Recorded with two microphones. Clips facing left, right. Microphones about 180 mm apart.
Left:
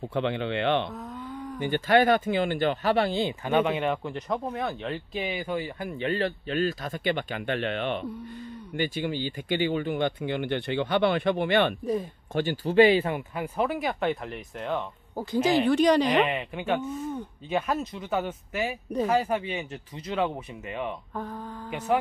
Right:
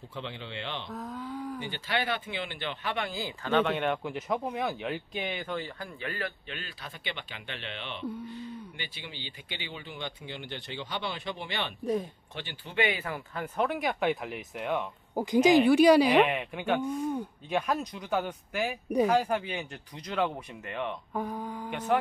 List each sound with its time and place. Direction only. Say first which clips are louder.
0.1 s speech: left 12 dB; 65° left (ahead or behind)
0.9 s a sound: even; centre (ahead or behind)
1.6 s speech: left 15 dB; 50° left (ahead or behind); by 3.3 s 25° left (ahead or behind)
3.4 s speech: even; 10° left (ahead or behind); by 11.7 s 55° left (ahead or behind)
11.8 s speech: left 2 dB; centre (ahead or behind)
12.4 s speech: left 12 dB; 40° left (ahead or behind)
13.3 s speech: left 2 dB; 5° left (ahead or behind)
21.1 s speech: right 2 dB; 10° right (ahead or behind)
21.6 s speech: left 3 dB; 5° left (ahead or behind)